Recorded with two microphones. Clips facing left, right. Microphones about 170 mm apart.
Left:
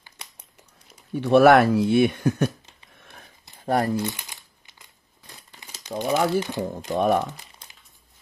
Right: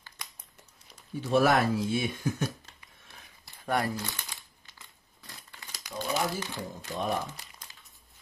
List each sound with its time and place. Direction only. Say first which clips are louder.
1.1 s speech: left 9 dB; 65° left (ahead or behind)
3.5 s crumpling: left 6 dB; 40° left (ahead or behind)
4.2 s crumpling: left 1 dB; 15° left (ahead or behind)
6.1 s speech: left 10 dB; 60° left (ahead or behind)